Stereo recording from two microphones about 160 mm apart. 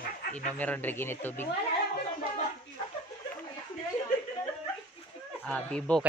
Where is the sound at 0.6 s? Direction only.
10° left (ahead or behind).